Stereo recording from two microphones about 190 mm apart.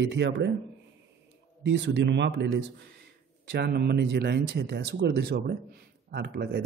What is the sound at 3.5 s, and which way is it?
Speech, 60° right (ahead or behind).